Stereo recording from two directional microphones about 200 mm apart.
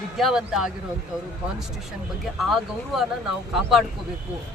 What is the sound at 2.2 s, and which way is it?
Speech, centre (ahead or behind).